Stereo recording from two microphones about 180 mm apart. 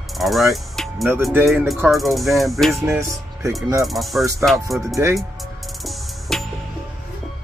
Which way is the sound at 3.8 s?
Centre (ahead or behind).